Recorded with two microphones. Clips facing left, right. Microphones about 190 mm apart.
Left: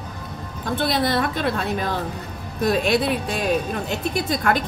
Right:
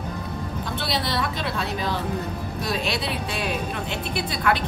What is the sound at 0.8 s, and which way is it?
Speech, 50° left (ahead or behind).